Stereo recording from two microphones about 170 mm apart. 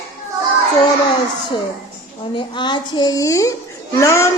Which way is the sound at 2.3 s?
25° left (ahead or behind).